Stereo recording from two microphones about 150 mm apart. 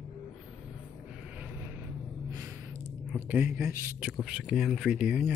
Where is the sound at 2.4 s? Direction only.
15° right (ahead or behind).